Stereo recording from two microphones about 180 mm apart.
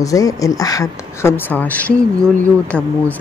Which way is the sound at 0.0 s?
20° left (ahead or behind).